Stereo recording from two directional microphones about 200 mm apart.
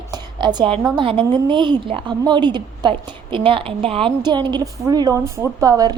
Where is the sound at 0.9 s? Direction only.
25° right (ahead or behind).